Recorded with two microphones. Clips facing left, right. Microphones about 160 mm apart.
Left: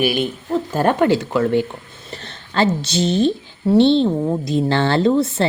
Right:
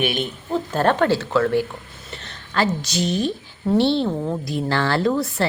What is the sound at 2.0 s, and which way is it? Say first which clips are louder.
Speech: left 3 dB; 35° left (ahead or behind).